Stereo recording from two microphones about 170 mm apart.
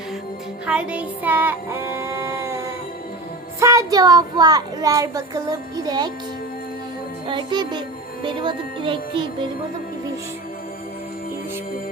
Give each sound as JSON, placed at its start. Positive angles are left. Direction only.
{"t": 0.6, "sound": "child singing", "side_deg": -5}
{"t": 3.6, "sound": "speech", "side_deg": -20}
{"t": 7.3, "sound": "a child's voice", "side_deg": -25}